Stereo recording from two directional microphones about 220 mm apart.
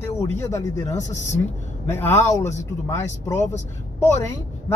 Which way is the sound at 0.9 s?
30° left (ahead or behind).